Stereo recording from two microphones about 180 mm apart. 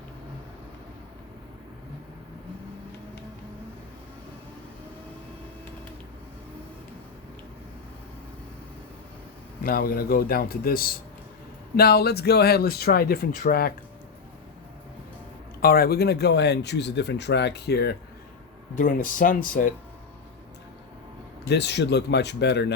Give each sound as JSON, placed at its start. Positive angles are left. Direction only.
{"t": 9.6, "sound": "speech", "side_deg": 55}
{"t": 15.6, "sound": "speech", "side_deg": 55}
{"t": 18.8, "sound": "speech", "side_deg": 45}
{"t": 21.4, "sound": "speech", "side_deg": 70}